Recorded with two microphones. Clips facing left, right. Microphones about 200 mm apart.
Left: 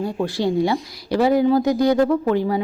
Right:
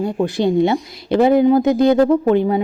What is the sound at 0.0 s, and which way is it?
A woman's voice, 20° right (ahead or behind).